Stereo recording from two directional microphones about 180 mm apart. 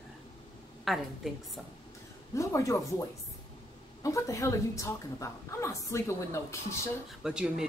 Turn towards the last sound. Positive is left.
turn(degrees=-5)  # may be behind; listen again after turning